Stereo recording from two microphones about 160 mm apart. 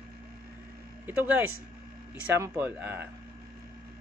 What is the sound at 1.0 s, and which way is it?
A man's voice, 10° right (ahead or behind).